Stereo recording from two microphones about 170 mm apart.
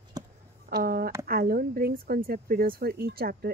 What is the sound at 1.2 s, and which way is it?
Speech, 60° right (ahead or behind).